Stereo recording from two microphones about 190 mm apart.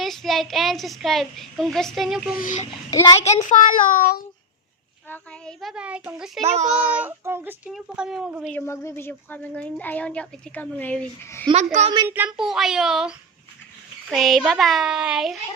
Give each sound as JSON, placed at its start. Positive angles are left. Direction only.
{"t": 0.0, "sound": "a woman's voice", "side_deg": 0}
{"t": 2.4, "sound": "a child's voice", "side_deg": 40}
{"t": 2.9, "sound": "speech", "side_deg": 15}
{"t": 3.2, "sound": "child singing", "side_deg": 40}
{"t": 5.0, "sound": "a woman's voice", "side_deg": 10}
{"t": 6.4, "sound": "a child's voice", "side_deg": -35}
{"t": 7.0, "sound": "a woman's voice", "side_deg": -10}
{"t": 8.5, "sound": "speech", "side_deg": 15}
{"t": 11.5, "sound": "a child's voice", "side_deg": -35}
{"t": 12.0, "sound": "a woman's voice", "side_deg": -10}